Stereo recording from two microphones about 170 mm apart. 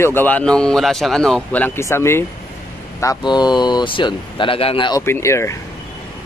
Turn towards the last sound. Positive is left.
turn(degrees=15)  # may be behind; listen again after turning